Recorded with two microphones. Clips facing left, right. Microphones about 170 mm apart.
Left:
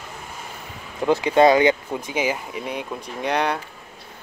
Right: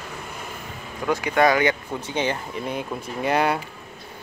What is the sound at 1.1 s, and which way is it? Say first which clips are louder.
Speech: left 4 dB; 25° left (ahead or behind).